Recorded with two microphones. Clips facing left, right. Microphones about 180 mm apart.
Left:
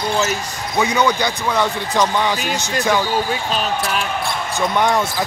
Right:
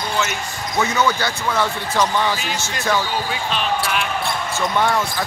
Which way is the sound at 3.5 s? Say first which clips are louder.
Right 1 dB; 40° left (ahead or behind).